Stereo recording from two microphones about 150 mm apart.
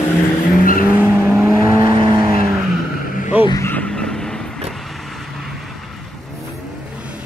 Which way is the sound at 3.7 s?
5° left (ahead or behind).